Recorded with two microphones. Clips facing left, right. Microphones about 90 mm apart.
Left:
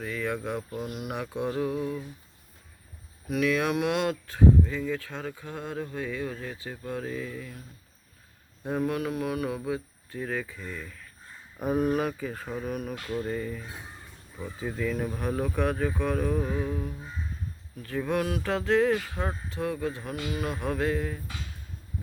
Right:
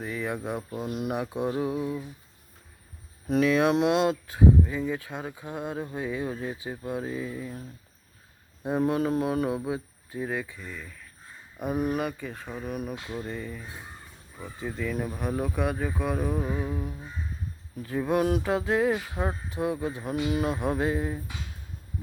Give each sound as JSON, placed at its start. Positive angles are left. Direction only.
{"t": 0.0, "sound": "speech", "side_deg": -15}
{"t": 3.2, "sound": "speech", "side_deg": -30}
{"t": 8.6, "sound": "speech", "side_deg": -20}
{"t": 10.4, "sound": "speech", "side_deg": 0}
{"t": 12.9, "sound": "speech", "side_deg": -15}
{"t": 13.2, "sound": "speech", "side_deg": 0}